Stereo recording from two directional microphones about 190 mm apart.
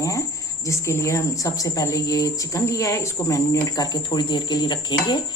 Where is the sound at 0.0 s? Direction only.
15° left (ahead or behind).